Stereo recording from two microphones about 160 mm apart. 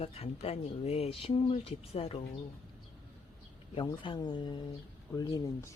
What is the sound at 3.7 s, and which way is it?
Speech, 30° left (ahead or behind).